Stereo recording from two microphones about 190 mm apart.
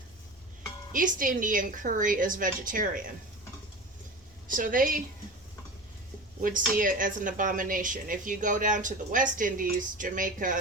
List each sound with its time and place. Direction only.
0.9 s speech: 45° right (ahead or behind)
4.4 s a woman's voice: 45° right (ahead or behind)
6.4 s speech: 45° right (ahead or behind)